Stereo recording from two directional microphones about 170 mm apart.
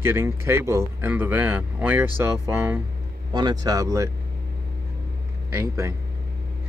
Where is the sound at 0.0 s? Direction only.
15° right (ahead or behind).